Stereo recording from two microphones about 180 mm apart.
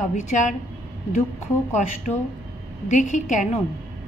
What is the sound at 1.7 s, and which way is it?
A woman's voice, 45° left (ahead or behind).